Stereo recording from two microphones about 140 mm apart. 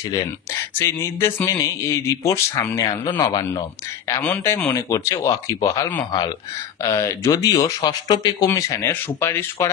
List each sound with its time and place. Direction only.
0.7 s speech: 20° left (ahead or behind)